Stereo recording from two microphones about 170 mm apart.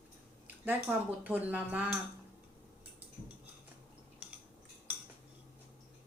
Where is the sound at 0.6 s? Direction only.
10° right (ahead or behind).